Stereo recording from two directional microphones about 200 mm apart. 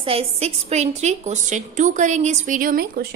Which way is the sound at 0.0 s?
30° right (ahead or behind).